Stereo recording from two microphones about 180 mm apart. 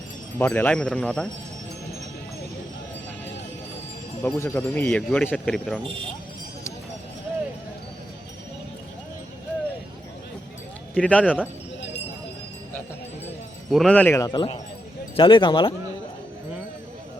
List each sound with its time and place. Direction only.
0.3 s speech: 10° left (ahead or behind)
4.2 s speech: 10° left (ahead or behind)
10.9 s speech: 5° left (ahead or behind)
13.7 s speech: centre (ahead or behind)
14.3 s speech: 25° left (ahead or behind)